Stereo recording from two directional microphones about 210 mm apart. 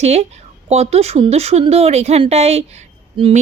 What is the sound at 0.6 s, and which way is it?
Speech, 30° right (ahead or behind).